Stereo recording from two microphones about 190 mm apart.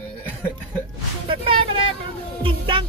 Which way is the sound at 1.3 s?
25° right (ahead or behind).